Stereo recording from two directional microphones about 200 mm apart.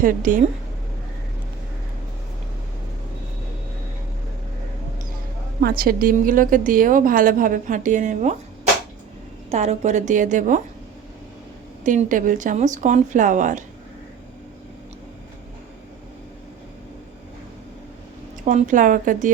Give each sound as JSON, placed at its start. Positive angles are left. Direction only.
{"t": 0.0, "sound": "a woman's voice", "side_deg": -40}
{"t": 5.5, "sound": "a woman's voice", "side_deg": -50}
{"t": 9.5, "sound": "speech", "side_deg": -35}
{"t": 11.8, "sound": "speech", "side_deg": -40}
{"t": 18.4, "sound": "speech", "side_deg": -35}